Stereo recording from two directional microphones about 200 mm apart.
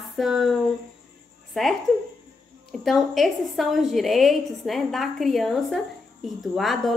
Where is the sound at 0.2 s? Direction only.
Centre (ahead or behind).